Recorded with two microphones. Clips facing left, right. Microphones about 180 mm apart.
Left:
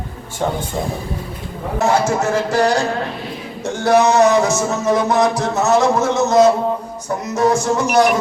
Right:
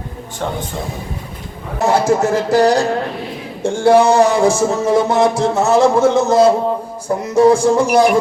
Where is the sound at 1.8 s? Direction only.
35° right (ahead or behind).